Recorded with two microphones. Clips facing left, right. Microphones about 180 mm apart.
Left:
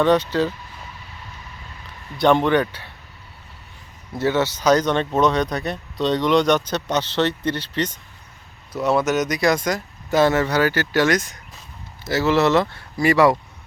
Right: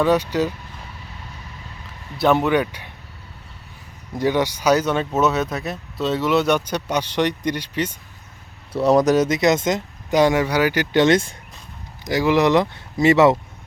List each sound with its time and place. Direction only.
0.0 s speech: 10° right (ahead or behind)
2.1 s speech: 5° right (ahead or behind)
4.1 s speech: 15° right (ahead or behind)
8.7 s speech: 35° right (ahead or behind)
12.0 s speech: 15° right (ahead or behind)